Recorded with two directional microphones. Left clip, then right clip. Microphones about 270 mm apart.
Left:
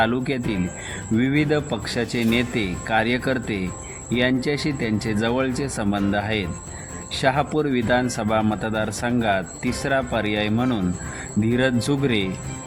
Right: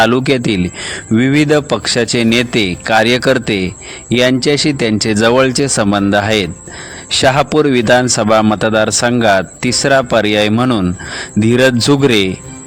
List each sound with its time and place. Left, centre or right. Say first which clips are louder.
0.0 s a man's voice: right 11 dB; right